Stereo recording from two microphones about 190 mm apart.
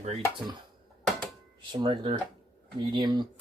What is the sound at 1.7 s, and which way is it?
Speech, 25° right (ahead or behind).